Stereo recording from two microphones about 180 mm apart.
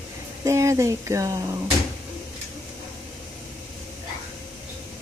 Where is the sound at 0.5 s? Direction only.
15° right (ahead or behind).